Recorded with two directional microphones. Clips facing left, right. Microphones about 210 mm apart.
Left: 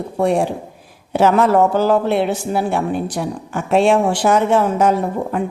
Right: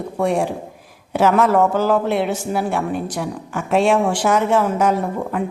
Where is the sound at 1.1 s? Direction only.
30° left (ahead or behind).